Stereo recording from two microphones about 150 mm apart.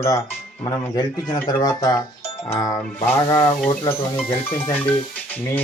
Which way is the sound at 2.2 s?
40° left (ahead or behind).